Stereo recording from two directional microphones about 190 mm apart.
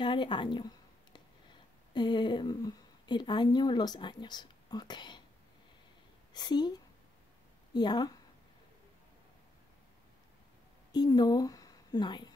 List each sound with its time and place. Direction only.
0.0 s a woman's voice: 25° left (ahead or behind)
6.3 s a woman's voice: 20° left (ahead or behind)
7.7 s a woman's voice: 20° left (ahead or behind)
10.9 s a woman's voice: 20° left (ahead or behind)